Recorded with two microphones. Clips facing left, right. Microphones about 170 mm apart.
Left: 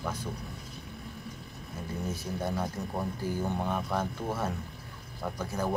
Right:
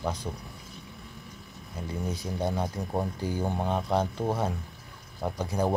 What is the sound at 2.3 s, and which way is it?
Speech, 25° right (ahead or behind).